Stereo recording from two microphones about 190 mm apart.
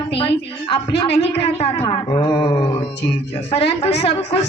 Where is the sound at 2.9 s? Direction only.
60° left (ahead or behind).